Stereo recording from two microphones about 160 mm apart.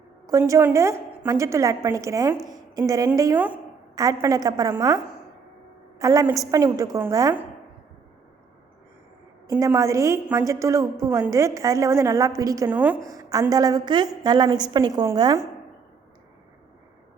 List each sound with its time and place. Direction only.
0.3 s a woman's voice: 20° right (ahead or behind)
6.0 s a woman's voice: 20° right (ahead or behind)
9.5 s a woman's voice: 20° right (ahead or behind)
13.0 s a woman's voice: 20° right (ahead or behind)